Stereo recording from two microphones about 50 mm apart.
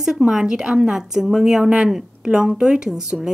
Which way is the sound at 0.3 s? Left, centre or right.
Centre.